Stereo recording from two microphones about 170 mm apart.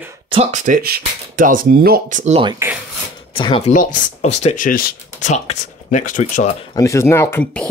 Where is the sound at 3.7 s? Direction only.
50° left (ahead or behind).